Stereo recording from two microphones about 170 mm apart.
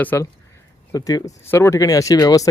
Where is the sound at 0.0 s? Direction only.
10° left (ahead or behind).